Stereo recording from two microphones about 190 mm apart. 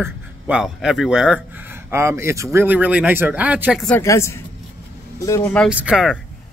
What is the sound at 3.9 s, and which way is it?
Speech, 15° left (ahead or behind).